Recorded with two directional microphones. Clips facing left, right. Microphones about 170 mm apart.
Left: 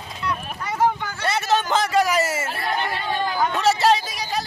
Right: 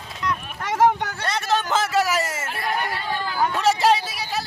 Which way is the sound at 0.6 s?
90° right.